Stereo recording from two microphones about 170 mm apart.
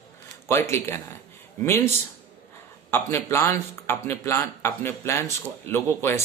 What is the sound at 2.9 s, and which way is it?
A man's voice, 15° left (ahead or behind).